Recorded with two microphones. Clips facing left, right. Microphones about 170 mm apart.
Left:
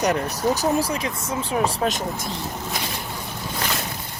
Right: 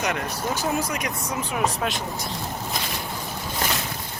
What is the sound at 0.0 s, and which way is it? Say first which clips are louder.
Speech: left 5 dB; 35° left (ahead or behind).